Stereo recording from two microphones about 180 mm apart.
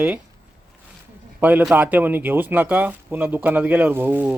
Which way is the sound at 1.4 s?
10° right (ahead or behind).